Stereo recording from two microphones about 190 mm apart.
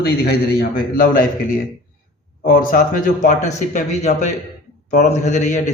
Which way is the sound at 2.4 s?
45° left (ahead or behind).